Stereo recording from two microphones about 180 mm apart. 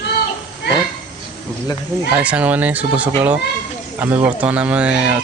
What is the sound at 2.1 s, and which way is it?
Speech, 10° right (ahead or behind).